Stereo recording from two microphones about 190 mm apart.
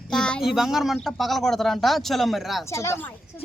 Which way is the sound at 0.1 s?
5° left (ahead or behind).